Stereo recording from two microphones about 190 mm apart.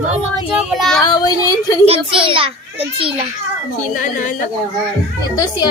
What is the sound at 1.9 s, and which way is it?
Speech, 25° right (ahead or behind).